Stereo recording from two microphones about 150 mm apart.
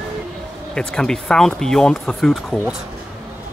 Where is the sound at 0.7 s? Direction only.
5° left (ahead or behind).